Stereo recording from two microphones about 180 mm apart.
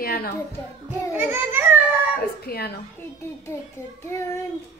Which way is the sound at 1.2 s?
10° right (ahead or behind).